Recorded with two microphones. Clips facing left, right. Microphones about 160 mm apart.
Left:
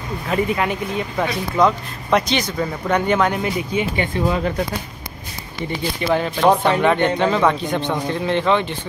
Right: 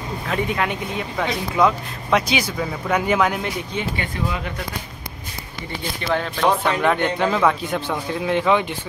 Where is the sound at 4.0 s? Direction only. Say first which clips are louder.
Left 6 dB; 35° left (ahead or behind).